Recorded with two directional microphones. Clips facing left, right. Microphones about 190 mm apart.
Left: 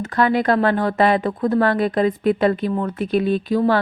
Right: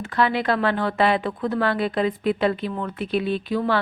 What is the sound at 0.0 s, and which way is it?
A woman's voice, 45° left (ahead or behind).